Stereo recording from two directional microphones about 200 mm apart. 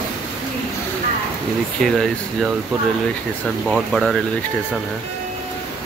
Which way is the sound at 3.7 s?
Centre (ahead or behind).